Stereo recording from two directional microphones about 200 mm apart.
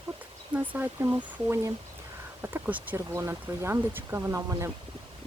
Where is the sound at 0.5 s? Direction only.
10° right (ahead or behind).